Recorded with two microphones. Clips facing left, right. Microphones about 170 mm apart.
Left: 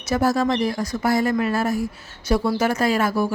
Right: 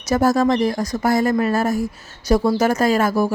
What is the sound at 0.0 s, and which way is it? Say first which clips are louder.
Speech: right 3 dB; 45° right (ahead or behind).